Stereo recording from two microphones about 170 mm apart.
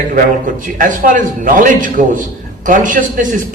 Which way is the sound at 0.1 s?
50° right (ahead or behind).